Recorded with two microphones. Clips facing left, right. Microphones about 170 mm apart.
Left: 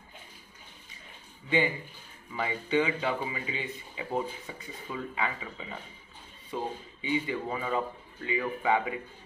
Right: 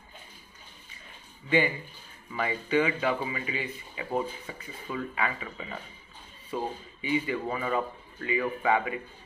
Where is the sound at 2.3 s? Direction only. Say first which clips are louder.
Right 1 dB; 20° left (ahead or behind).